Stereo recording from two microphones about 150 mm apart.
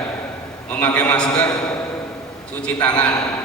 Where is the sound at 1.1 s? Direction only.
5° left (ahead or behind).